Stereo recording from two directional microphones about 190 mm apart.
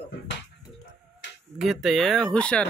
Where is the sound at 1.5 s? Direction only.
Centre (ahead or behind).